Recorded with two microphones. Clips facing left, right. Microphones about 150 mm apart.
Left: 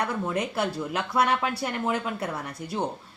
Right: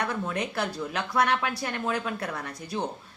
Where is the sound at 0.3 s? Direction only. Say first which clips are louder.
Left 2 dB; 20° left (ahead or behind).